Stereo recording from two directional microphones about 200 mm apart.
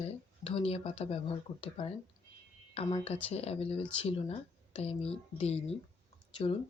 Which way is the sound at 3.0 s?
30° left (ahead or behind).